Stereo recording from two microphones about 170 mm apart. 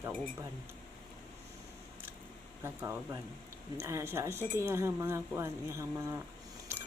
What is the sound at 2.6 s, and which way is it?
Speech, 15° right (ahead or behind).